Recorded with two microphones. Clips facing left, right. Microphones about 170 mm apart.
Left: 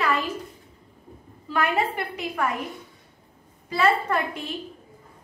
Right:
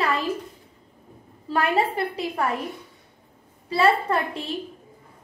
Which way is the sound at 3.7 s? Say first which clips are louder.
Right 2 dB; 30° right (ahead or behind).